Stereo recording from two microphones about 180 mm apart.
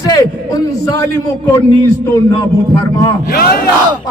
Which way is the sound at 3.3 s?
55° left (ahead or behind).